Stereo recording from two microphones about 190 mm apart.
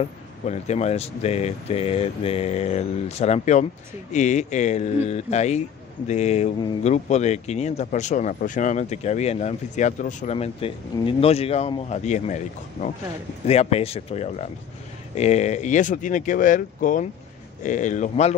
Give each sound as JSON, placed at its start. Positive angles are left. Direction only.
{"t": 0.0, "sound": "speech", "side_deg": 35}
{"t": 13.5, "sound": "speech", "side_deg": 35}